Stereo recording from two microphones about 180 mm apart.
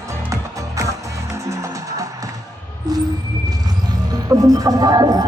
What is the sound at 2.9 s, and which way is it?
Vehicle, 20° right (ahead or behind).